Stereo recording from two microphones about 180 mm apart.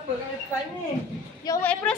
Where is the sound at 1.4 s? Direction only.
20° left (ahead or behind).